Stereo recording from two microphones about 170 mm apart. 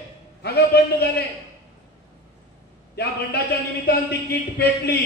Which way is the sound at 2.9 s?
70° left (ahead or behind).